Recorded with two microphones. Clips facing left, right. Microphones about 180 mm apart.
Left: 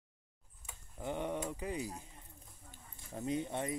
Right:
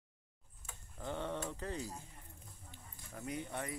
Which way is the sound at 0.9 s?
15° left (ahead or behind).